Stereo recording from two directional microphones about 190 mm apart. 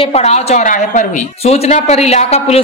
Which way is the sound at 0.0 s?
35° left (ahead or behind).